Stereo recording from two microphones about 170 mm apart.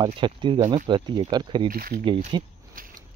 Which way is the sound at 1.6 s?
55° right (ahead or behind).